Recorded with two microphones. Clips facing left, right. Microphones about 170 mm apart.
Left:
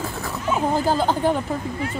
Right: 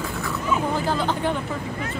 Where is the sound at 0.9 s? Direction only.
40° left (ahead or behind).